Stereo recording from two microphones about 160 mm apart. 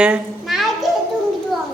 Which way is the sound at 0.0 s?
5° right (ahead or behind).